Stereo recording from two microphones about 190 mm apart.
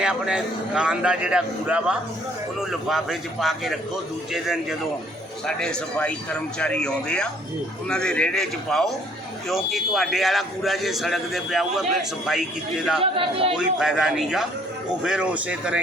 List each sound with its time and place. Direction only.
0.0 s a man's voice: 5° right (ahead or behind)
5.5 s a man's voice: 5° left (ahead or behind)
13.0 s speech: 30° right (ahead or behind)
13.6 s a man's voice: 5° right (ahead or behind)